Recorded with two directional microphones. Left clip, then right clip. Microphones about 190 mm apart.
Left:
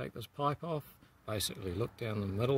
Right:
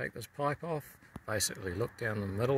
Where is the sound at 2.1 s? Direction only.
5° left (ahead or behind).